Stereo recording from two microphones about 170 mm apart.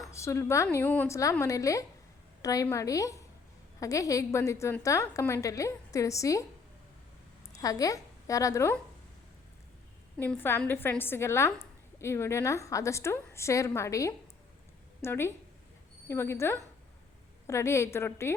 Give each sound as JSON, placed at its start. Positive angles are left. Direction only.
{"t": 0.1, "sound": "a woman's voice", "side_deg": 15}
{"t": 7.5, "sound": "a woman's voice", "side_deg": 20}
{"t": 10.2, "sound": "a woman's voice", "side_deg": 10}